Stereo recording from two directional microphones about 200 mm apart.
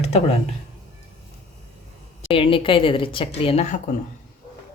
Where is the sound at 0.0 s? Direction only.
30° left (ahead or behind).